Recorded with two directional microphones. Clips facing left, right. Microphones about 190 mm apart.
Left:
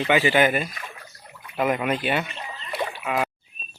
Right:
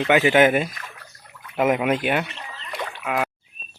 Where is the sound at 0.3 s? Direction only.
15° right (ahead or behind).